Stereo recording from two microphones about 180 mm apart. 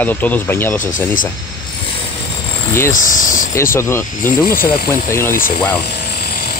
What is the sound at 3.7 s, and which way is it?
Speech, 15° left (ahead or behind).